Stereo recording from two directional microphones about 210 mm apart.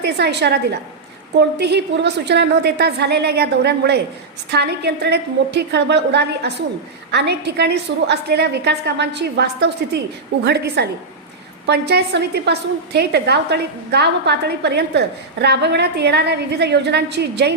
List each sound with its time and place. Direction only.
0.0 s a woman's voice: 55° right (ahead or behind)